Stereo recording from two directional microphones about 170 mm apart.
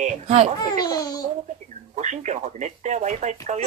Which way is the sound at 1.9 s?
45° right (ahead or behind).